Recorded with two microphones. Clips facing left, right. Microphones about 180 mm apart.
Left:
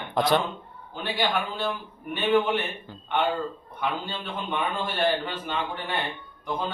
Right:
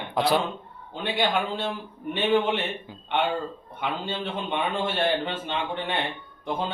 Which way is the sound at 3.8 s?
25° right (ahead or behind).